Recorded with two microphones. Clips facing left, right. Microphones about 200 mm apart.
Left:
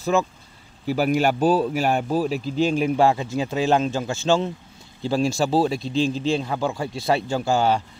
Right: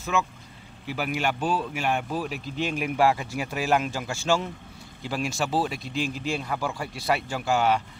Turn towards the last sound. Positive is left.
turn(degrees=30)  # may be behind; listen again after turning